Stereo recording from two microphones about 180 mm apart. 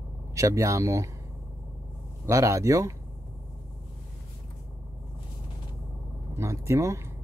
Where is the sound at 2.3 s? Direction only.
15° right (ahead or behind).